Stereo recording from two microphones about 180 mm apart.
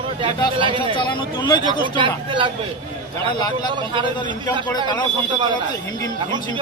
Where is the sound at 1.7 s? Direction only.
25° right (ahead or behind).